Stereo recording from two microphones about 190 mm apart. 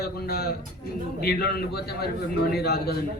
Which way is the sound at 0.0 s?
55° left (ahead or behind).